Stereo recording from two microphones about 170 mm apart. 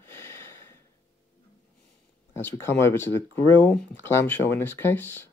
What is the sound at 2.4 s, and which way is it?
Speech, 15° left (ahead or behind).